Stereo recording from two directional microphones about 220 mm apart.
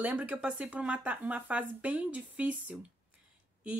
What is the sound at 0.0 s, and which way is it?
Speech, 5° right (ahead or behind).